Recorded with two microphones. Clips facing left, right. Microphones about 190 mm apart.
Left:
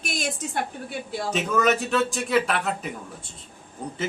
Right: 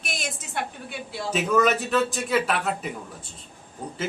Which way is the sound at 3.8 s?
Centre (ahead or behind).